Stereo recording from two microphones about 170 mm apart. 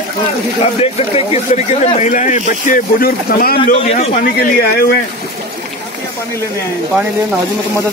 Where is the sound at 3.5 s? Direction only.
35° left (ahead or behind).